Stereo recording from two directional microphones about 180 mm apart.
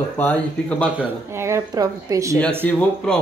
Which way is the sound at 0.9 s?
10° right (ahead or behind).